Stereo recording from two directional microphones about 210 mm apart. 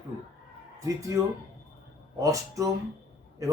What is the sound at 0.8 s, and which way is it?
A man's voice, 15° right (ahead or behind).